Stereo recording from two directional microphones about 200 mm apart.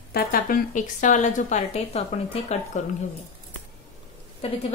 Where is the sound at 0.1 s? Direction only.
50° left (ahead or behind).